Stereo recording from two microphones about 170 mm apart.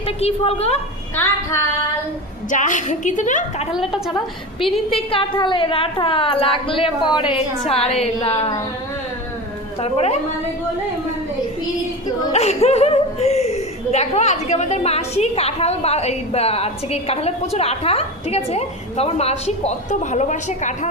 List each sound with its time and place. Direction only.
0.2 s a woman's voice: 35° left (ahead or behind)
1.1 s female singing: 15° left (ahead or behind)
2.5 s a woman's voice: 50° left (ahead or behind)
3.7 s a woman's voice: centre (ahead or behind)
4.9 s a woman's voice: 30° left (ahead or behind)
7.3 s a woman's voice: 5° right (ahead or behind)
7.7 s a woman's voice: 35° left (ahead or behind)
9.8 s a woman's voice: 40° left (ahead or behind)
12.3 s a woman's voice: 40° left (ahead or behind)